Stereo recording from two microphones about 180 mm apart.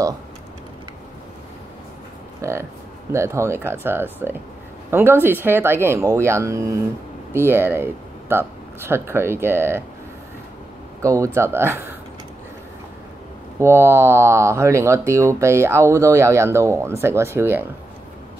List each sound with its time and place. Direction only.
2.4 s speech: 15° right (ahead or behind)
11.0 s speech: 15° right (ahead or behind)
13.6 s speech: 15° right (ahead or behind)